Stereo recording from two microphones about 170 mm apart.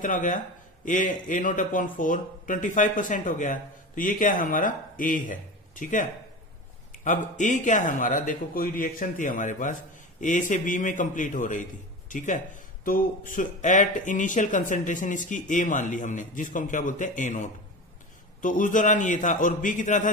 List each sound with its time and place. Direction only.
0.0 s speech: 50° left (ahead or behind)
7.1 s speech: 45° left (ahead or behind)